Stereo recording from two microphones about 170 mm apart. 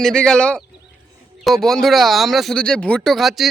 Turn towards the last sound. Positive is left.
turn(degrees=0)  # may be behind; listen again after turning